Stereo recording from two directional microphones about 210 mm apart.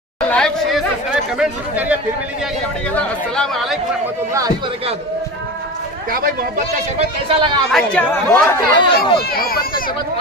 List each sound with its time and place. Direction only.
0.3 s chatter: centre (ahead or behind)
1.4 s speech: 5° right (ahead or behind)
2.9 s speech: 5° left (ahead or behind)
7.2 s speech: 25° right (ahead or behind)
7.7 s speech: 5° left (ahead or behind)
8.7 s speech: 20° left (ahead or behind)
9.3 s speech: 45° left (ahead or behind)